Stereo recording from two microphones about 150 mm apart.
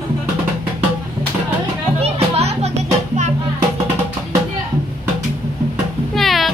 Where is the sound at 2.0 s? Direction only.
40° right (ahead or behind).